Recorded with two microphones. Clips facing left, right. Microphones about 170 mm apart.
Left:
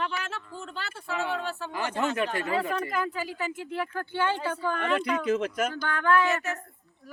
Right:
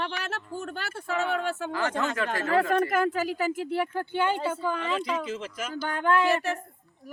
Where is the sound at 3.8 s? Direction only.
20° right (ahead or behind).